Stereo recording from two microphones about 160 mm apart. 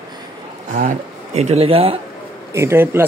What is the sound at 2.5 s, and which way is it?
Speech, 15° right (ahead or behind).